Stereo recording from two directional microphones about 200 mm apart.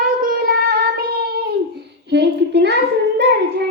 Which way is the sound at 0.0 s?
45° right (ahead or behind).